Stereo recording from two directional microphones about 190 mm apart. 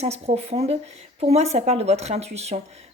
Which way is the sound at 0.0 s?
35° right (ahead or behind).